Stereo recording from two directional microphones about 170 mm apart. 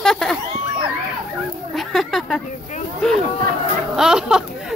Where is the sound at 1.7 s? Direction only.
Centre (ahead or behind).